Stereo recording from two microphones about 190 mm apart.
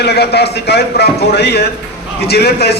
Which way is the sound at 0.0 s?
60° left (ahead or behind).